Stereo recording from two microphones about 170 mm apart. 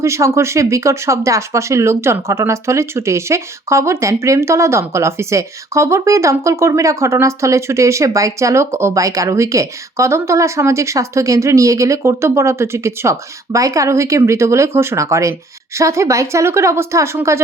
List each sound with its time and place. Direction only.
0.0 s speech: 15° right (ahead or behind)